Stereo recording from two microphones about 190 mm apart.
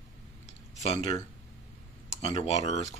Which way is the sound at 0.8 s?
35° left (ahead or behind).